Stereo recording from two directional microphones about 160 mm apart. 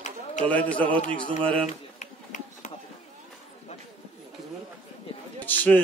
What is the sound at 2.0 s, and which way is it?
Run, 50° left (ahead or behind).